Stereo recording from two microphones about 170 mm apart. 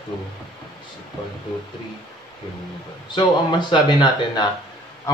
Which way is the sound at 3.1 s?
25° left (ahead or behind).